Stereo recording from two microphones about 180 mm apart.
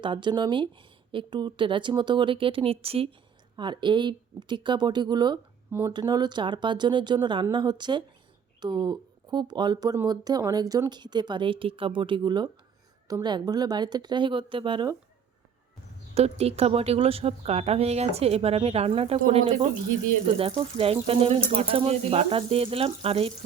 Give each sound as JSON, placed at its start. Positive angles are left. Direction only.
{"t": 0.0, "sound": "a woman's voice", "side_deg": -25}
{"t": 16.1, "sound": "speech", "side_deg": -35}